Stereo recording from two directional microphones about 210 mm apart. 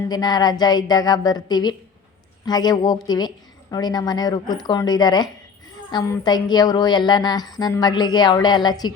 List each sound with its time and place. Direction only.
0.1 s a woman's voice: 20° left (ahead or behind)